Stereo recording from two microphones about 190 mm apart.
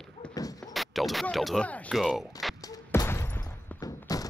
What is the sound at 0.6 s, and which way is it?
Speech, centre (ahead or behind).